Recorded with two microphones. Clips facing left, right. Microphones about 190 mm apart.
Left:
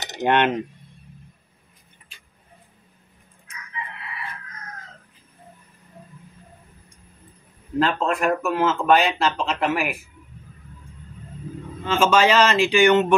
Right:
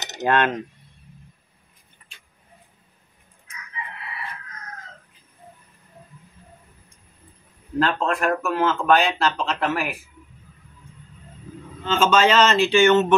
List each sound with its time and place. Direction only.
0.2 s speech: 20° left (ahead or behind)
7.8 s speech: 5° left (ahead or behind)
11.8 s speech: 10° left (ahead or behind)